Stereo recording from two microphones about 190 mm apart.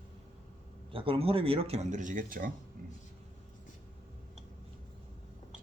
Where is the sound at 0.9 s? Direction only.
30° right (ahead or behind); by 2.5 s 45° right (ahead or behind).